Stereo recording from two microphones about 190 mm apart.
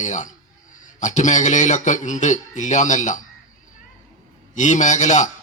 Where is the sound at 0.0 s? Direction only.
40° left (ahead or behind).